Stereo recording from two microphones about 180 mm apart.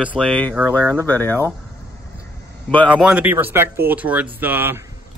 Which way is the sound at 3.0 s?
5° right (ahead or behind).